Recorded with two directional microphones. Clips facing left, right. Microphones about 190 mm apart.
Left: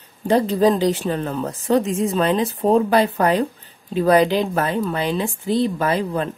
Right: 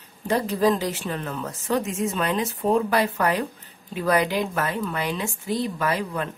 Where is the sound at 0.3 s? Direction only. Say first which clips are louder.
Left 5 dB; 30° left (ahead or behind).